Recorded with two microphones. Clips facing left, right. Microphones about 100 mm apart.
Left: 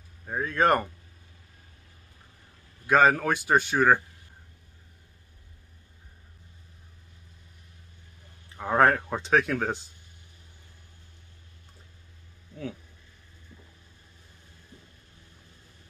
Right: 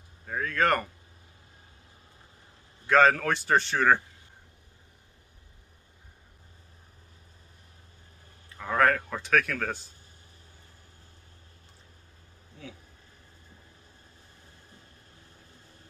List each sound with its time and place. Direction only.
0.3 s speech: 20° left (ahead or behind)
2.9 s speech: 15° left (ahead or behind)
8.5 s speech: 25° left (ahead or behind)